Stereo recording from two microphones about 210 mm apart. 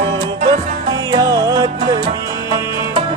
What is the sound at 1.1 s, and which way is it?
Music, 15° right (ahead or behind).